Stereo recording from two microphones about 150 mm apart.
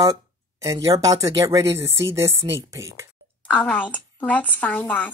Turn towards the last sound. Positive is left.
turn(degrees=10)  # may be behind; listen again after turning